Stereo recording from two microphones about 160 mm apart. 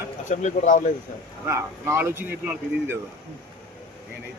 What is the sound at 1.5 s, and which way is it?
Speech, 15° right (ahead or behind).